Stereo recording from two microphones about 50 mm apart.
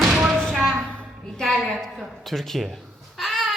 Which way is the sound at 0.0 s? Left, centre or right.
Centre.